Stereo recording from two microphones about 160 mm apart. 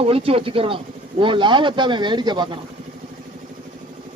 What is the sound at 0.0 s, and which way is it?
Speech, 35° right (ahead or behind).